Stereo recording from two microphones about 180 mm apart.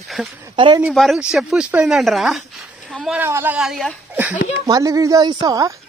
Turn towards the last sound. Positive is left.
turn(degrees=-20)  # may be behind; listen again after turning